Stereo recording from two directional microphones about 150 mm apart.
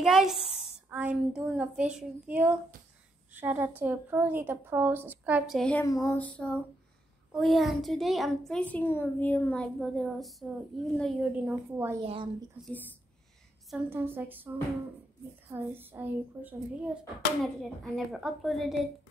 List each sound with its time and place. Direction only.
0.0 s a woman's voice: 5° right (ahead or behind)
5.6 s a sound: 10° left (ahead or behind)
5.9 s a sound: 20° left (ahead or behind)
6.1 s a sound: 10° left (ahead or behind)
7.3 s speech: centre (ahead or behind)
11.4 s a woman's voice: 15° right (ahead or behind)
12.0 s a woman's voice: 40° right (ahead or behind)
12.6 s a woman's voice: 10° right (ahead or behind)
13.8 s a woman's voice: 15° right (ahead or behind)
15.5 s speech: 15° right (ahead or behind)